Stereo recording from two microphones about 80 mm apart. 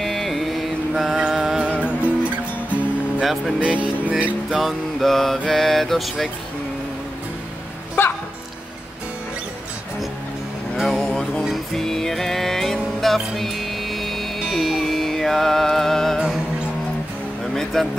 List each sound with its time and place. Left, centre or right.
0.0 s music: centre
1.8 s music: centre
3.2 s music: centre
3.5 s speech: centre
4.5 s mantra: centre
10.8 s a sound: centre
11.4 s music: centre
17.8 s speech: centre